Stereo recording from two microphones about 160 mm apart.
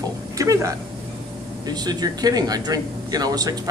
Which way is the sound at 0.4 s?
20° right (ahead or behind).